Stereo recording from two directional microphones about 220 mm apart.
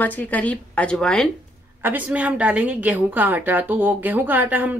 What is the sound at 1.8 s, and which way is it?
A woman's voice, 10° right (ahead or behind).